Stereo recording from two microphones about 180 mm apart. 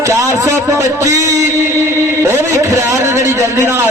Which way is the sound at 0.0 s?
15° right (ahead or behind).